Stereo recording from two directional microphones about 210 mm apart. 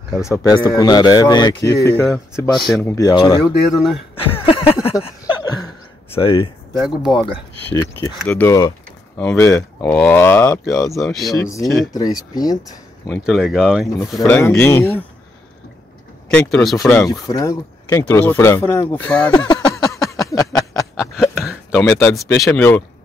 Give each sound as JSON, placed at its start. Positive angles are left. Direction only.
{"t": 0.2, "sound": "speech", "side_deg": 15}
{"t": 3.7, "sound": "speech", "side_deg": 0}
{"t": 4.1, "sound": "speech", "side_deg": 25}
{"t": 5.0, "sound": "chuckle", "side_deg": 20}
{"t": 6.1, "sound": "speech", "side_deg": 25}
{"t": 11.9, "sound": "speech", "side_deg": 15}
{"t": 13.2, "sound": "speech", "side_deg": 0}
{"t": 14.2, "sound": "speech", "side_deg": 10}
{"t": 16.3, "sound": "speech", "side_deg": 5}
{"t": 19.3, "sound": "a sound", "side_deg": 20}
{"t": 21.0, "sound": "a sound", "side_deg": 0}
{"t": 22.4, "sound": "speech", "side_deg": 5}